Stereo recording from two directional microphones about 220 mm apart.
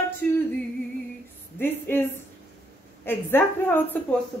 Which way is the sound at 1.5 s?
10° left (ahead or behind).